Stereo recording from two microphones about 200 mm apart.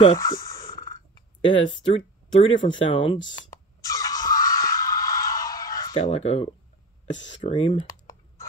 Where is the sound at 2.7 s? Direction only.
25° left (ahead or behind).